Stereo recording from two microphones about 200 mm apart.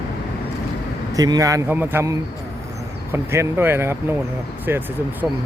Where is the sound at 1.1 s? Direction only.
20° right (ahead or behind).